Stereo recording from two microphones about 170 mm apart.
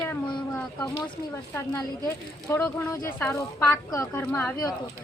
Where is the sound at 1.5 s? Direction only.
20° left (ahead or behind).